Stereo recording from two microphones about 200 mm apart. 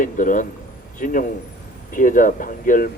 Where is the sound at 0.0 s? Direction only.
40° left (ahead or behind).